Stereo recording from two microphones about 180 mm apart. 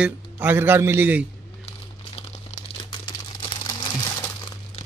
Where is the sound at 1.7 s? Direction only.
35° left (ahead or behind).